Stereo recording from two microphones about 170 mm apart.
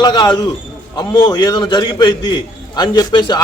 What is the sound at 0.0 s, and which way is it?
A man's voice, 25° left (ahead or behind).